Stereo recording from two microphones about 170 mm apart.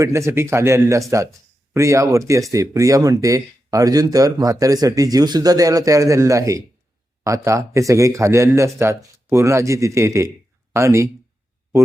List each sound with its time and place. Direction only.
0.0 s speech: 15° right (ahead or behind)